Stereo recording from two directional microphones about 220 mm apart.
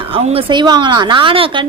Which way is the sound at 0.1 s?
25° right (ahead or behind).